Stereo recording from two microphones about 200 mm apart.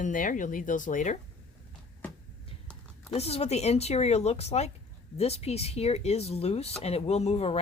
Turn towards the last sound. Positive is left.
turn(degrees=30)  # may be behind; listen again after turning